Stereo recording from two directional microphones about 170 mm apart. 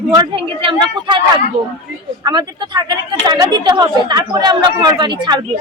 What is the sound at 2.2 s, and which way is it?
Speech, 25° right (ahead or behind).